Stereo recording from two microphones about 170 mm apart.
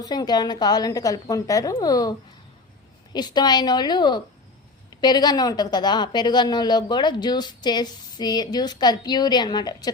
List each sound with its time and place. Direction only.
0.0 s speech: 25° left (ahead or behind)